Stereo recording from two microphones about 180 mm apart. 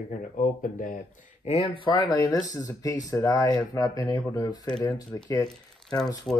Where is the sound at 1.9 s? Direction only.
20° left (ahead or behind).